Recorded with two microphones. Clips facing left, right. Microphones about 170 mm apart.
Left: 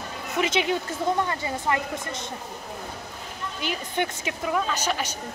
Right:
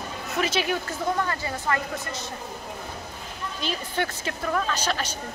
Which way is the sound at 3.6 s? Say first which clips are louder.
Left 1 dB; 15° left (ahead or behind).